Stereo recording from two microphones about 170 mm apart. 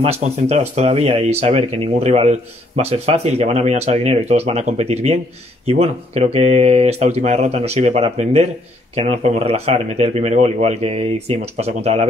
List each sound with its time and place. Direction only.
0.0 s speech: 40° right (ahead or behind)